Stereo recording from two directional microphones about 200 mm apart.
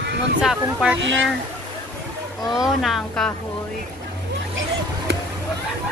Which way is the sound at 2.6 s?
Centre (ahead or behind).